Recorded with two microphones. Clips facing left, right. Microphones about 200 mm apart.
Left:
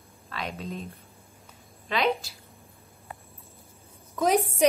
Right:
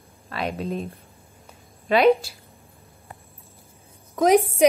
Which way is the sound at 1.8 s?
60° right (ahead or behind).